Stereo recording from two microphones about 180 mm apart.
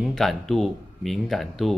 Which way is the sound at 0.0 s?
Centre (ahead or behind).